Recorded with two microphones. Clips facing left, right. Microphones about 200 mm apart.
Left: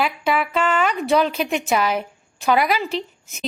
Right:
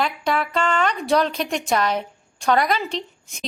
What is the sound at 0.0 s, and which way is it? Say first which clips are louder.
A woman's voice: left 1 dB; 5° left (ahead or behind).